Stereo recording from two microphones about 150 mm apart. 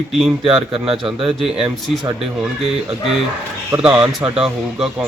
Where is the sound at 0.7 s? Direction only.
40° right (ahead or behind).